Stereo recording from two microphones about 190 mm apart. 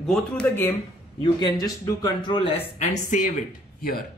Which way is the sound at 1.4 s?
20° left (ahead or behind).